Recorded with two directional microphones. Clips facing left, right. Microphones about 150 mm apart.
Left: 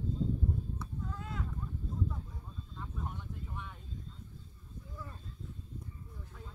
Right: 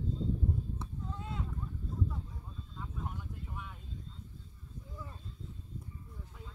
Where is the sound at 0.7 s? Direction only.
25° right (ahead or behind).